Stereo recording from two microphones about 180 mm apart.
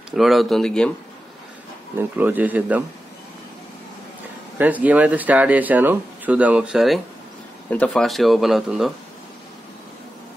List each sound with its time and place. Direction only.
0.1 s speech: centre (ahead or behind)
2.0 s speech: 10° right (ahead or behind)
4.6 s speech: 10° right (ahead or behind)